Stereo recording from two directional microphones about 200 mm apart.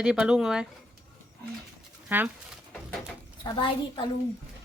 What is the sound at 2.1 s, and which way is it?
Speech, 10° right (ahead or behind).